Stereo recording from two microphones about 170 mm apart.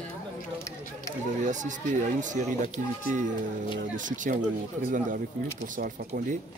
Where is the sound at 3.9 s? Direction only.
50° right (ahead or behind).